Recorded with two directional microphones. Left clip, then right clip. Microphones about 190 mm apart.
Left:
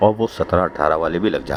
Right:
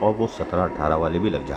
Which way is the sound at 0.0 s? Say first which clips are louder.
Left 5 dB; 25° left (ahead or behind).